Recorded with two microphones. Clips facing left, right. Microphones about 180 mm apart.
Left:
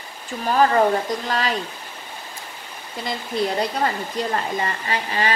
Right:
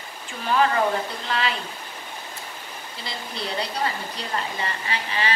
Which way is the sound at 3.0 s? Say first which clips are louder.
Left 9 dB; 50° left (ahead or behind).